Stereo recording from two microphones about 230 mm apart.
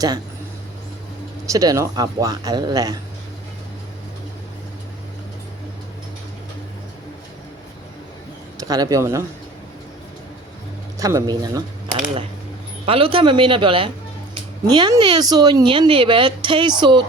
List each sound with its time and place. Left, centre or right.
1.5 s speech: centre
8.5 s speech: centre
11.0 s speech: centre
12.8 s speech: right